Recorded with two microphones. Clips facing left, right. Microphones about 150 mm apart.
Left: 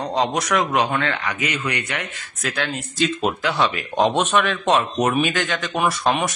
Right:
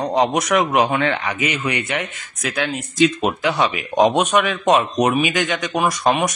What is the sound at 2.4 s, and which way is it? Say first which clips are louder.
Speech: right 2 dB; 15° right (ahead or behind).